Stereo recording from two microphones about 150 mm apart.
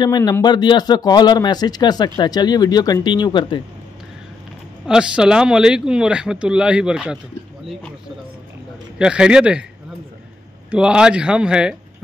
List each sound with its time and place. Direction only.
0.0 s speech: 25° left (ahead or behind)
4.8 s speech: 5° right (ahead or behind)
8.9 s speech: 5° right (ahead or behind)
10.7 s speech: 5° right (ahead or behind)